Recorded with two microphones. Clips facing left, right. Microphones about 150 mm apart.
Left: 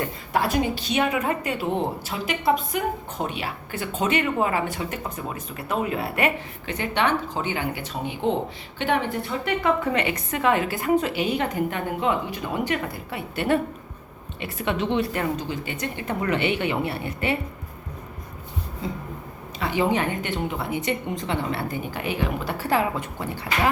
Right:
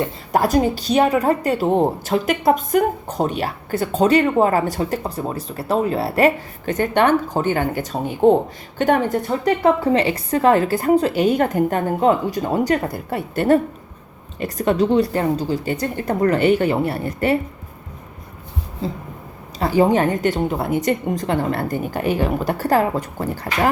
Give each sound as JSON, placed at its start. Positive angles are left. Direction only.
{"t": 0.3, "sound": "a woman's voice", "side_deg": -40}
{"t": 18.8, "sound": "a sound", "side_deg": -30}
{"t": 19.5, "sound": "a woman's voice", "side_deg": -40}